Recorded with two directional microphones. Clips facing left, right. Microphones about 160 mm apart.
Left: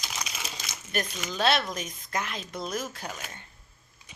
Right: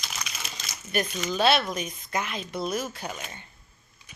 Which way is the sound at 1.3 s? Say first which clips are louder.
Right 3 dB; 5° right (ahead or behind).